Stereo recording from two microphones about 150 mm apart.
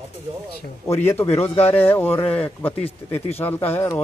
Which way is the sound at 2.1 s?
40° left (ahead or behind).